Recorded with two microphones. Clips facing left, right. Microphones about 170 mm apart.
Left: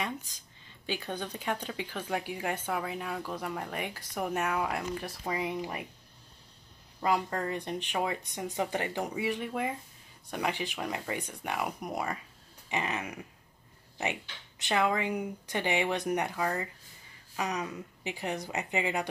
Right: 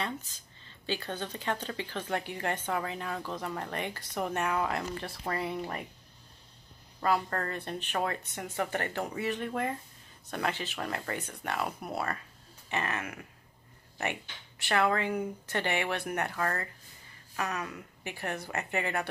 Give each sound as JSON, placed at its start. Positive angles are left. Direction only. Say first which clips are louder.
{"t": 0.0, "sound": "speech", "louder": "even", "side_deg": 15}
{"t": 7.0, "sound": "speech", "louder": "even", "side_deg": 10}
{"t": 14.6, "sound": "speech", "louder": "right 1 dB", "side_deg": 15}